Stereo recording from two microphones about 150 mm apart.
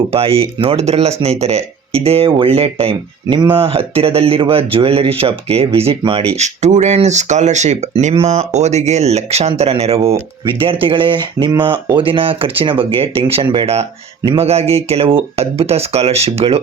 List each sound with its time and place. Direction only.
0.1 s speech: 40° right (ahead or behind)
6.3 s speech: 50° right (ahead or behind)